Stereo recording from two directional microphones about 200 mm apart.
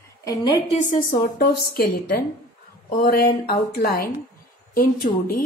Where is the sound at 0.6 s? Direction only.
35° left (ahead or behind).